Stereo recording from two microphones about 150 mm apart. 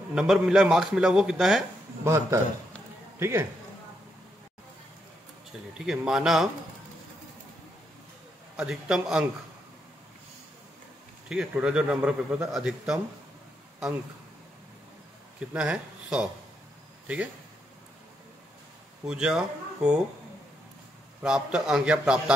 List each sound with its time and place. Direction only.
0.1 s a man's voice: 5° right (ahead or behind)
2.0 s a man's voice: 20° right (ahead or behind)
5.8 s a man's voice: 5° right (ahead or behind)
8.5 s a man's voice: 5° right (ahead or behind)
11.2 s a man's voice: 5° right (ahead or behind)
15.5 s a man's voice: 5° right (ahead or behind)
19.0 s speech: 5° right (ahead or behind)
21.2 s a man's voice: 5° right (ahead or behind)